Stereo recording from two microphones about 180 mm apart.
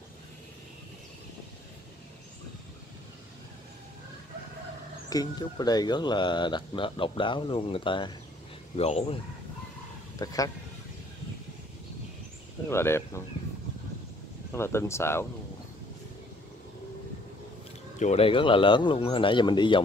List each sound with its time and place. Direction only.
5.1 s speech: 20° left (ahead or behind)
10.1 s speech: 20° left (ahead or behind)
12.6 s speech: 15° left (ahead or behind)
14.5 s speech: 15° left (ahead or behind)
17.9 s speech: 40° left (ahead or behind)